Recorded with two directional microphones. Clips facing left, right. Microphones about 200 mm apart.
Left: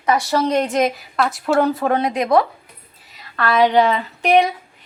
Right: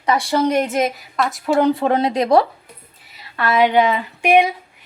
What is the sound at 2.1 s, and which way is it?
Speech, 35° right (ahead or behind).